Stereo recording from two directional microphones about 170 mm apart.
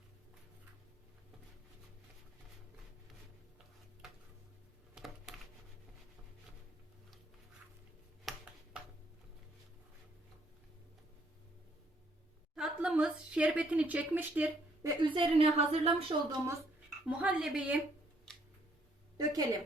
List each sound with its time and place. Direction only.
4.9 s a sound: centre (ahead or behind)
8.2 s a sound: centre (ahead or behind)
12.5 s a woman's voice: 5° right (ahead or behind)
15.0 s a woman's voice: 30° right (ahead or behind)
17.1 s speech: 5° right (ahead or behind)
19.1 s a woman's voice: 20° right (ahead or behind)